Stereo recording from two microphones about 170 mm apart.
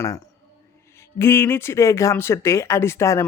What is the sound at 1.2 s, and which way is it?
Speech, 15° left (ahead or behind).